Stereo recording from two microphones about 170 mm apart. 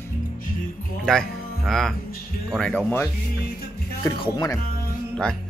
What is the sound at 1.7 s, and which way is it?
Speech, centre (ahead or behind).